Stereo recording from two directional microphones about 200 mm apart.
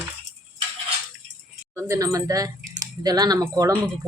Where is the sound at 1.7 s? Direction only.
15° right (ahead or behind).